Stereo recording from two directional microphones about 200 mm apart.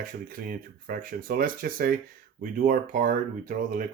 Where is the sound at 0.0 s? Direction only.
45° right (ahead or behind).